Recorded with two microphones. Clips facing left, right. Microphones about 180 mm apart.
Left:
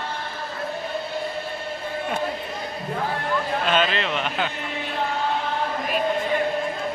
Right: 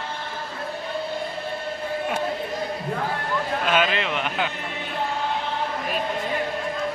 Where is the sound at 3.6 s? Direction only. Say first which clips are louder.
Right 1 dB; 10° right (ahead or behind).